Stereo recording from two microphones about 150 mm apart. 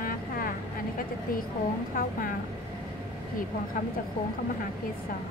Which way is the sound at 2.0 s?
65° left (ahead or behind).